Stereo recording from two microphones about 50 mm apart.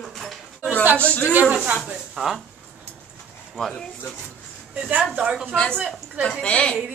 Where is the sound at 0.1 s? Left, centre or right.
Centre.